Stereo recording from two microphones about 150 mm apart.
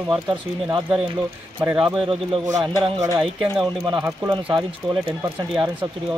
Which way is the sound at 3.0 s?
25° right (ahead or behind).